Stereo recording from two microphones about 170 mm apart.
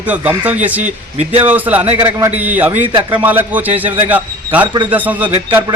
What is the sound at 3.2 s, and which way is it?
A man's voice, 10° right (ahead or behind).